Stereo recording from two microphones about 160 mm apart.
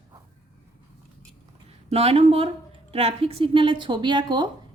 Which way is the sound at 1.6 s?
40° right (ahead or behind).